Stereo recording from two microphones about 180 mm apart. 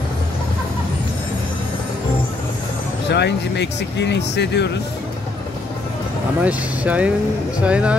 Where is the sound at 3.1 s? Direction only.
70° left (ahead or behind).